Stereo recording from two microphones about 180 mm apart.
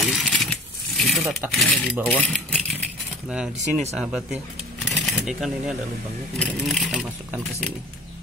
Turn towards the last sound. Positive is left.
turn(degrees=0)  # may be behind; listen again after turning